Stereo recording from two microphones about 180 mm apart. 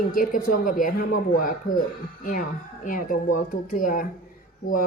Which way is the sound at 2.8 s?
50° left (ahead or behind).